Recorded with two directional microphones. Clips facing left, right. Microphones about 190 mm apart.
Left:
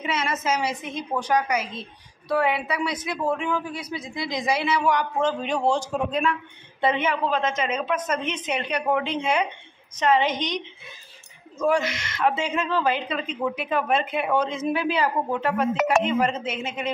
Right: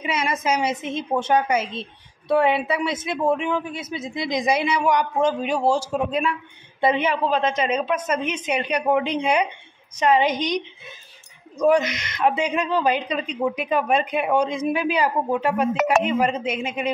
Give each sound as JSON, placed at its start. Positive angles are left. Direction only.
{"t": 0.0, "sound": "a woman's voice", "side_deg": -10}
{"t": 6.9, "sound": "a woman's voice", "side_deg": -35}
{"t": 7.8, "sound": "speech", "side_deg": -10}